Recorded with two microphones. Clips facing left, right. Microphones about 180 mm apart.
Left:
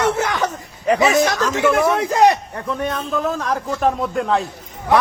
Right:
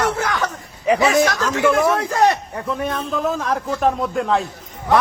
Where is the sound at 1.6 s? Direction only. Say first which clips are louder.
Even; centre (ahead or behind).